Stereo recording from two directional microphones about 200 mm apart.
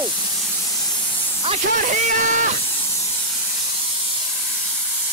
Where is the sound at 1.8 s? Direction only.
40° right (ahead or behind).